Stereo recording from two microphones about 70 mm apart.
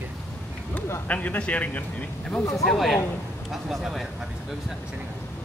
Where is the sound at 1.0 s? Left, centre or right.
Left.